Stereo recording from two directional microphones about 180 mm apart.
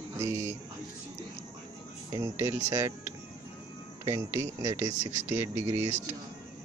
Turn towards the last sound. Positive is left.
turn(degrees=-15)  # may be behind; listen again after turning